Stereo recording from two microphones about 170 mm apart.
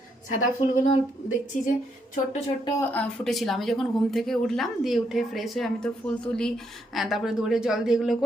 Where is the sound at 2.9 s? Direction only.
5° left (ahead or behind).